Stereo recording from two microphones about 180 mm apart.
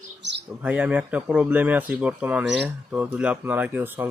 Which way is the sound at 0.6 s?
10° right (ahead or behind).